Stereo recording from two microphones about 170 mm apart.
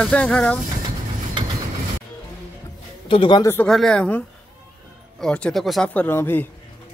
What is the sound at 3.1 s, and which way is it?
Speech, 30° left (ahead or behind).